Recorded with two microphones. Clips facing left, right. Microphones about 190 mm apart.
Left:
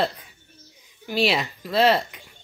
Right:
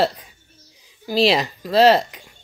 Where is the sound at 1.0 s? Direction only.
35° right (ahead or behind).